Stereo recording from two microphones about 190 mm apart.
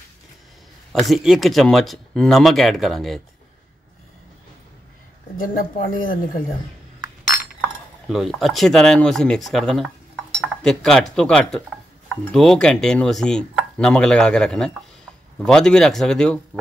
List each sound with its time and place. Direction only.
0.9 s speech: centre (ahead or behind)
5.4 s speech: 50° left (ahead or behind)
7.6 s speech: centre (ahead or behind)